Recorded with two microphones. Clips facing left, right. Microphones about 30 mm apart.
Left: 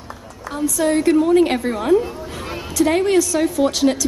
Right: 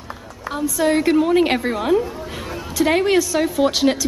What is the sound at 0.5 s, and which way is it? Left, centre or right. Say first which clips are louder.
A woman's voice: even; centre.